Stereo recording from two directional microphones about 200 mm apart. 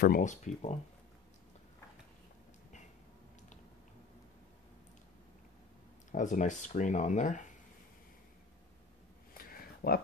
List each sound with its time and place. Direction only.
0.0 s speech: 40° left (ahead or behind)
6.1 s speech: 40° left (ahead or behind)
9.3 s a sound: 45° left (ahead or behind)